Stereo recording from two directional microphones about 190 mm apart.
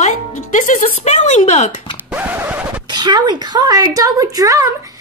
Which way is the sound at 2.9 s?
20° right (ahead or behind).